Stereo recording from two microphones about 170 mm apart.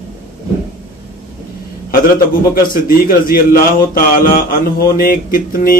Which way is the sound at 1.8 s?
60° left (ahead or behind).